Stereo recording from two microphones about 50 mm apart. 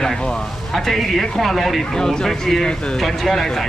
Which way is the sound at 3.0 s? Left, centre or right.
Centre.